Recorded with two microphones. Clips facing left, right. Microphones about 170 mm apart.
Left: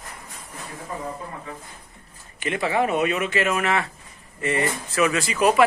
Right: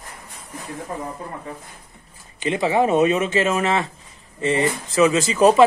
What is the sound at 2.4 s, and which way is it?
Speech, 25° right (ahead or behind).